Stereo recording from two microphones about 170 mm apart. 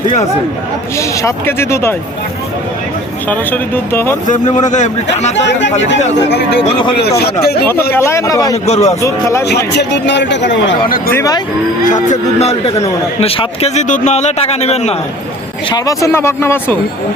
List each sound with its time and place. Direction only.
0.9 s speech: 15° left (ahead or behind)
3.2 s speech: 10° left (ahead or behind)
4.3 s a man's voice: 45° left (ahead or behind)
5.5 s speech: 90° left
6.9 s speech: 70° left (ahead or behind)
7.9 s speech: 15° left (ahead or behind)
8.6 s a man's voice: 40° left (ahead or behind)
9.0 s speech: 15° left (ahead or behind)
9.7 s speech: 90° left; by 11.1 s 60° left (ahead or behind)
11.1 s speech: 20° left (ahead or behind)
11.9 s a man's voice: 45° left (ahead or behind)
15.7 s speech: 20° left (ahead or behind)